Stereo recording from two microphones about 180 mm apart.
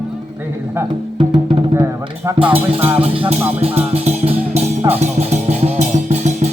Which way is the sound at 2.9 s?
30° right (ahead or behind).